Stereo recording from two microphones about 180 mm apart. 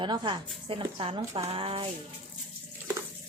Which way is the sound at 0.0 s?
25° right (ahead or behind).